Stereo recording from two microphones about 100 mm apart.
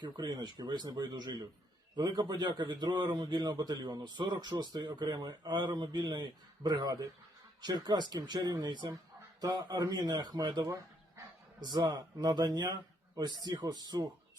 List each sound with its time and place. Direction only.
0.0 s a man's voice: 45° right (ahead or behind)